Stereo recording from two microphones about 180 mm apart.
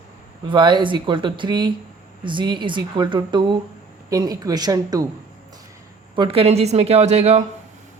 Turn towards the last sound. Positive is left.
turn(degrees=-35)  # may be behind; listen again after turning